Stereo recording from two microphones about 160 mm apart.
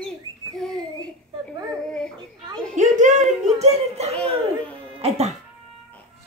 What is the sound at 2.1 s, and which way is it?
Children playing, 25° right (ahead or behind).